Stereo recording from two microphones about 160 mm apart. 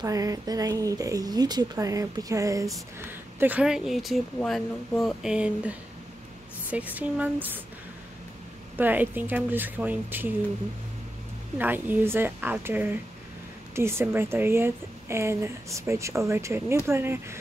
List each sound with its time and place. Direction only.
0.0 s a woman's voice: 20° right (ahead or behind)
8.7 s a woman's voice: 10° right (ahead or behind)
11.5 s a woman's voice: 10° right (ahead or behind)